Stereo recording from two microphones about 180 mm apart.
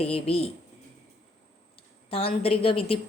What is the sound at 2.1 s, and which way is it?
Speech, 30° left (ahead or behind).